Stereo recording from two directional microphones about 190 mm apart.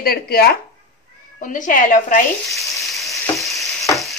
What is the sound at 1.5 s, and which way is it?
Speech, 45° left (ahead or behind).